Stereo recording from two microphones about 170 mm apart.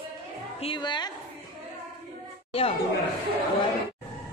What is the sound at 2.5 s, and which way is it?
Speech, 35° left (ahead or behind).